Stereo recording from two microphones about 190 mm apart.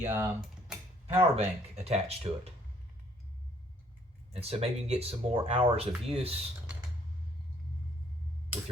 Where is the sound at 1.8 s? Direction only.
35° right (ahead or behind).